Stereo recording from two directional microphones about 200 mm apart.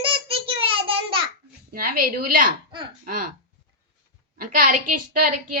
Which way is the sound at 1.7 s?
45° right (ahead or behind).